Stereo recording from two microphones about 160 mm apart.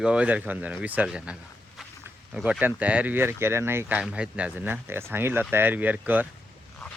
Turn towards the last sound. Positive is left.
turn(degrees=-10)  # may be behind; listen again after turning